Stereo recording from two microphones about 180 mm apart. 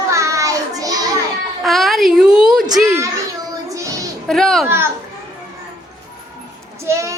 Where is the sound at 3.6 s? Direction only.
20° right (ahead or behind).